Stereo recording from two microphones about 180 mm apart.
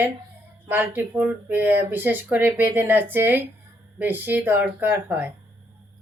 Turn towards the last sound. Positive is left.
turn(degrees=-10)  # may be behind; listen again after turning